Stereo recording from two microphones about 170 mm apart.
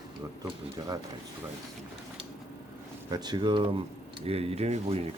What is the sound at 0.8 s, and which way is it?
Speech, 20° right (ahead or behind).